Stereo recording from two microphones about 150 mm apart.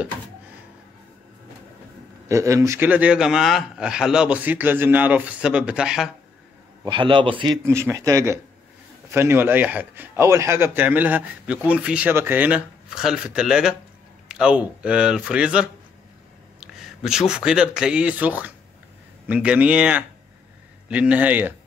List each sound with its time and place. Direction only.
2.2 s speech: 20° right (ahead or behind); by 6.0 s 5° right (ahead or behind)
6.8 s a man's voice: 35° right (ahead or behind)
7.6 s speech: 15° right (ahead or behind)